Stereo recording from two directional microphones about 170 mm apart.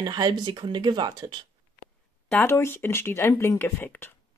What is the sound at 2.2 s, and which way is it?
Speech, 10° left (ahead or behind).